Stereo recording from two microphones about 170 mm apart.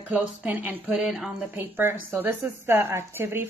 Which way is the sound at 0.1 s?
10° right (ahead or behind).